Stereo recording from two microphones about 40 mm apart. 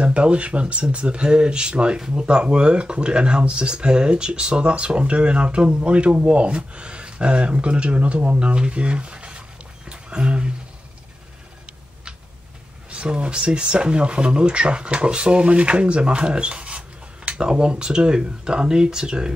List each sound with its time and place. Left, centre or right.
0.0 s speech: right
9.8 s a sound: right
12.9 s speech: right